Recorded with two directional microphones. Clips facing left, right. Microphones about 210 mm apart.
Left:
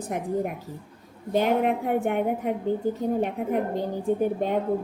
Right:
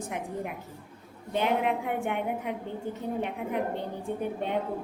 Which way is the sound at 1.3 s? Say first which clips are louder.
Left 5 dB; 40° left (ahead or behind).